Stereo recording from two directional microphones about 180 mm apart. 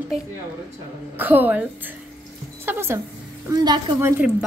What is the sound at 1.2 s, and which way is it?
Speech, 10° right (ahead or behind).